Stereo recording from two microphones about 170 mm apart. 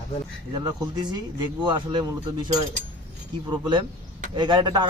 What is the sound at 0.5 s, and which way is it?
A man's voice, 25° right (ahead or behind).